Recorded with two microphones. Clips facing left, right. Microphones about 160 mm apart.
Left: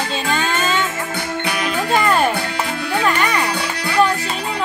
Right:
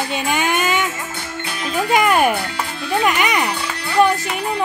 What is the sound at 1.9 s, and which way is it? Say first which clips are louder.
Music: right 2 dB; 15° right (ahead or behind).